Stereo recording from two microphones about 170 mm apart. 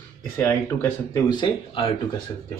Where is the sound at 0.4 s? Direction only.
15° left (ahead or behind).